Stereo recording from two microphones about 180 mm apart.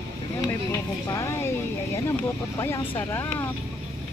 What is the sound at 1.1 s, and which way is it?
Speech, 15° left (ahead or behind).